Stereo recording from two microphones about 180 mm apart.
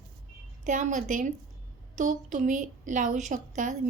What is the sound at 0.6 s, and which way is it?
A woman's voice, 45° right (ahead or behind).